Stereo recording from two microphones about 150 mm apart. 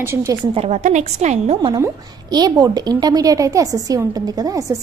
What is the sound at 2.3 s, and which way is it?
A woman's voice, 25° right (ahead or behind).